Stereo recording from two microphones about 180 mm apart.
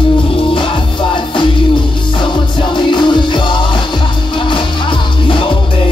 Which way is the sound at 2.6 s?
25° left (ahead or behind).